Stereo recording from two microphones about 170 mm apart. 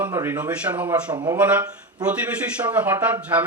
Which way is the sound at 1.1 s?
25° right (ahead or behind).